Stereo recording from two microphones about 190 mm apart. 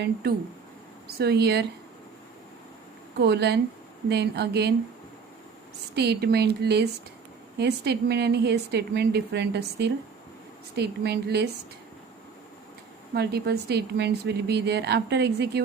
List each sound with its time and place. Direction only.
0.0 s speech: 60° right (ahead or behind)
3.2 s speech: 60° right (ahead or behind)
5.9 s speech: 60° right (ahead or behind)
13.1 s speech: 60° right (ahead or behind)